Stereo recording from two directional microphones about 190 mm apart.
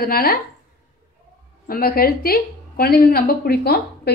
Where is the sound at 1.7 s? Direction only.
55° left (ahead or behind).